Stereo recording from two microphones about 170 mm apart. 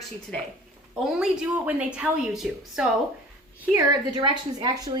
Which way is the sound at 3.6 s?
20° right (ahead or behind).